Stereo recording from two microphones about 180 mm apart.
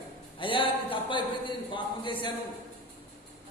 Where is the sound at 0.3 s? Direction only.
30° left (ahead or behind).